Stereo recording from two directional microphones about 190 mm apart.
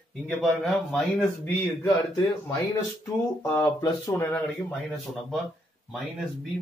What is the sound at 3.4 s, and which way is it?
Speech, 20° left (ahead or behind).